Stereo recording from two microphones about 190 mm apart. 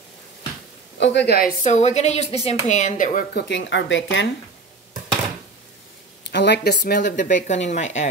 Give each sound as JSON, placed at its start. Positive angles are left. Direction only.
{"t": 0.9, "sound": "speech", "side_deg": 65}
{"t": 1.6, "sound": "speech", "side_deg": 35}
{"t": 3.4, "sound": "speech", "side_deg": 70}
{"t": 6.3, "sound": "speech", "side_deg": 60}
{"t": 7.1, "sound": "speech", "side_deg": 40}